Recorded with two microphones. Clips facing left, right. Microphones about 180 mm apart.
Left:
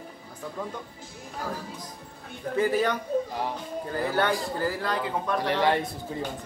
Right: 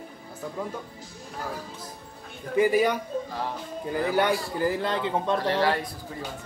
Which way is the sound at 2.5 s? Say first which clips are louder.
Right 3 dB; 10° right (ahead or behind).